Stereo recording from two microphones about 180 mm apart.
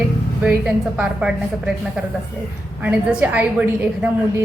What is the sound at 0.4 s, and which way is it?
A woman's voice, 5° right (ahead or behind).